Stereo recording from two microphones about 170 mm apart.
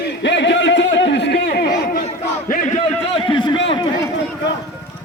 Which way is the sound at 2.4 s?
50° left (ahead or behind).